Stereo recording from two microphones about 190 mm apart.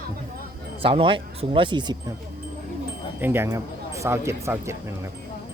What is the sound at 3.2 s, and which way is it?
Speech, 10° right (ahead or behind).